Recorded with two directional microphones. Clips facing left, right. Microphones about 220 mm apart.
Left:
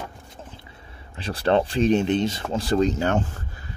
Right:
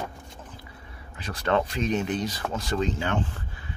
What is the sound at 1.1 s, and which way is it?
Speech, 30° left (ahead or behind).